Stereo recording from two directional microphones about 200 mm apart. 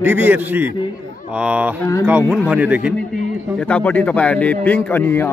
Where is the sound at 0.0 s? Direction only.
10° right (ahead or behind).